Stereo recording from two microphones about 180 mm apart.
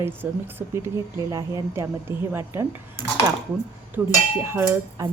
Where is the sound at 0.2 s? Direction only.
10° right (ahead or behind).